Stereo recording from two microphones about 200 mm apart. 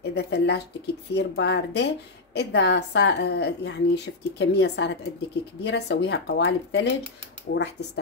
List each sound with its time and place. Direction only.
0.0 s a woman's voice: 55° left (ahead or behind)